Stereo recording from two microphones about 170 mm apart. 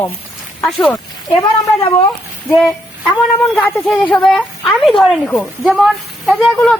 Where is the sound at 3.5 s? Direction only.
10° left (ahead or behind).